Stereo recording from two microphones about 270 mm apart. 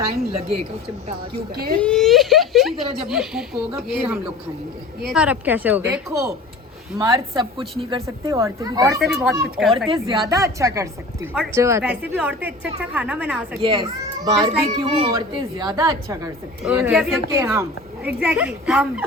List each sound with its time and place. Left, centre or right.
1.5 s speech: right
1.8 s a woman's voice: centre
9.0 s a woman's voice: centre
9.9 s a woman's voice: centre
13.6 s a child's voice: centre